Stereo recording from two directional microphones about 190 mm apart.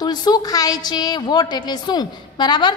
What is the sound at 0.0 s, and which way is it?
A woman's voice, 20° left (ahead or behind).